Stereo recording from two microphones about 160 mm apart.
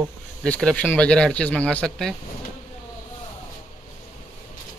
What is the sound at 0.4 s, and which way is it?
Speech, 5° left (ahead or behind).